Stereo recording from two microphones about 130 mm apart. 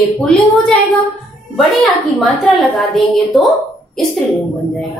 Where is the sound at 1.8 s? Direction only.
Centre (ahead or behind).